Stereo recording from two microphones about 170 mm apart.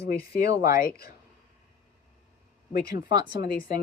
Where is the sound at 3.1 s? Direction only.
25° right (ahead or behind).